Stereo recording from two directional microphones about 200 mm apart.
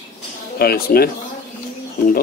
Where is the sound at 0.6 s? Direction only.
50° left (ahead or behind).